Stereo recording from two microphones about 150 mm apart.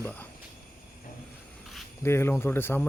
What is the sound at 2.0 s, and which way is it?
Speech, 15° left (ahead or behind).